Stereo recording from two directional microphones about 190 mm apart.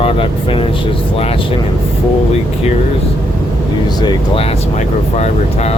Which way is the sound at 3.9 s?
20° left (ahead or behind).